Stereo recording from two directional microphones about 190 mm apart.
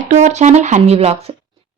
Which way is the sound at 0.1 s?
40° right (ahead or behind).